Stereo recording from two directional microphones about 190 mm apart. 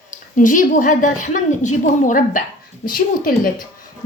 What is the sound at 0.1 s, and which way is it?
A woman's voice, 45° left (ahead or behind).